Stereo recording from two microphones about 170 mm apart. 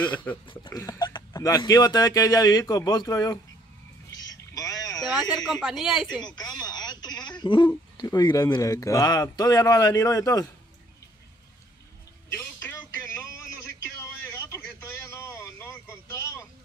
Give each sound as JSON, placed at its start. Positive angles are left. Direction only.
{"t": 0.0, "sound": "speech", "side_deg": 10}
{"t": 0.5, "sound": "speech", "side_deg": 25}
{"t": 4.1, "sound": "vehicle", "side_deg": 20}
{"t": 5.5, "sound": "a woman's voice", "side_deg": 0}
{"t": 6.0, "sound": "speech", "side_deg": 25}
{"t": 12.4, "sound": "music", "side_deg": 15}
{"t": 14.2, "sound": "a sound", "side_deg": 15}